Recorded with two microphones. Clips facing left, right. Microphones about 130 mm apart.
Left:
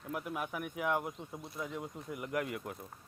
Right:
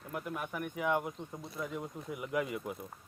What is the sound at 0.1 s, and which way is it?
Speech, 5° left (ahead or behind).